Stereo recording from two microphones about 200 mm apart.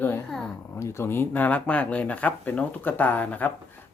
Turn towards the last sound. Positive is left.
turn(degrees=10)  # may be behind; listen again after turning